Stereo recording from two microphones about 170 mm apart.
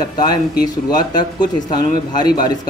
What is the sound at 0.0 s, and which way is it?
Speech, 25° left (ahead or behind).